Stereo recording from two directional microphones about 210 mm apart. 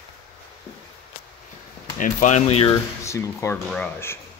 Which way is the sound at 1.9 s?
35° left (ahead or behind).